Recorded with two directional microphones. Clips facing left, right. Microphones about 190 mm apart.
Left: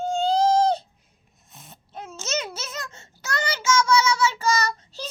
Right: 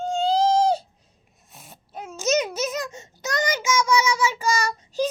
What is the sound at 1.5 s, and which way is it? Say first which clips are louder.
Babbling: right 1 dB; 10° right (ahead or behind).